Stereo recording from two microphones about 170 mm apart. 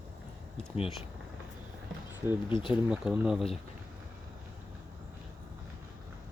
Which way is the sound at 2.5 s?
30° left (ahead or behind).